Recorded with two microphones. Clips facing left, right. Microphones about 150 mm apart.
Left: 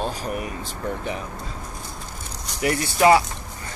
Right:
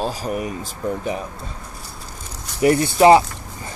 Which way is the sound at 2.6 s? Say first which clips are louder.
Right 6 dB; 30° right (ahead or behind).